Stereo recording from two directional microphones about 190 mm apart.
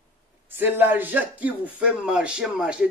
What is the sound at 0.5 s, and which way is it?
Speech, 10° right (ahead or behind).